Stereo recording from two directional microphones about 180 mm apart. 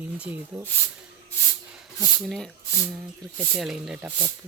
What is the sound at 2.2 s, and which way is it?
Speech, centre (ahead or behind).